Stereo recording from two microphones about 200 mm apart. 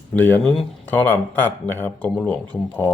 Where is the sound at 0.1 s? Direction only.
10° left (ahead or behind).